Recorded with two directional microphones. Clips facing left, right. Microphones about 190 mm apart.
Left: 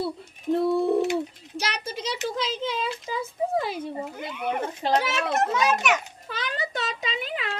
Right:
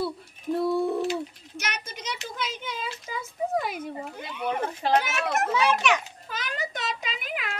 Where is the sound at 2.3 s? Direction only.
30° left (ahead or behind).